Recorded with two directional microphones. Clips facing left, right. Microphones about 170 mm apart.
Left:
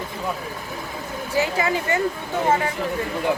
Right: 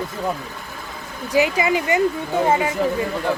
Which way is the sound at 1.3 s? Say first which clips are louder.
Right 4 dB; 15° right (ahead or behind).